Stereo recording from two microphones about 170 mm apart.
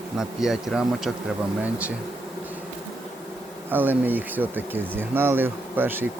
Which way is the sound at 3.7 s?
10° right (ahead or behind).